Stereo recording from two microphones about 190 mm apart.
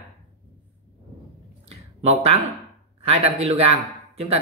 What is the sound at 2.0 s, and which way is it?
Speech, 35° right (ahead or behind).